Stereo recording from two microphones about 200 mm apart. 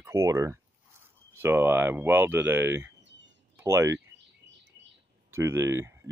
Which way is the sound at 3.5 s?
15° right (ahead or behind).